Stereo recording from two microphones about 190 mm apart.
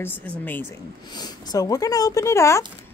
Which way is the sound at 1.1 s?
20° left (ahead or behind).